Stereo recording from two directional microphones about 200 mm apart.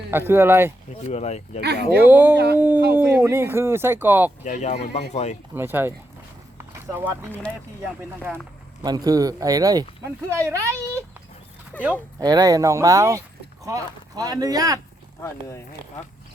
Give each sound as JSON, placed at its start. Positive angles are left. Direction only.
{"t": 0.1, "sound": "speech", "side_deg": -10}
{"t": 1.0, "sound": "speech", "side_deg": 35}
{"t": 1.6, "sound": "speech", "side_deg": -55}
{"t": 2.0, "sound": "speech", "side_deg": -10}
{"t": 4.4, "sound": "speech", "side_deg": 40}
{"t": 5.5, "sound": "speech", "side_deg": -10}
{"t": 6.6, "sound": "clip-clop", "side_deg": -10}
{"t": 7.9, "sound": "speech", "side_deg": -10}
{"t": 11.7, "sound": "speech", "side_deg": 10}
{"t": 12.2, "sound": "speech", "side_deg": -20}
{"t": 15.2, "sound": "speech", "side_deg": 15}